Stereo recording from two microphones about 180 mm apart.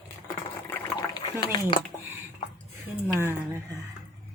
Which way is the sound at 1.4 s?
25° left (ahead or behind).